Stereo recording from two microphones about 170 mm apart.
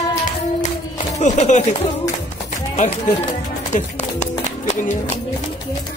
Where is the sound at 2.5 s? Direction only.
45° left (ahead or behind).